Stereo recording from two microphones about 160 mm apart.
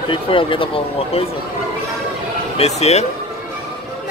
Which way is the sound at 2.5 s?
40° left (ahead or behind).